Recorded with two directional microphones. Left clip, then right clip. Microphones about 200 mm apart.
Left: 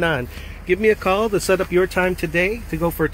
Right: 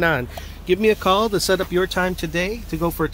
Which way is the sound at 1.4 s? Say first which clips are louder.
Left 2 dB; 10° left (ahead or behind).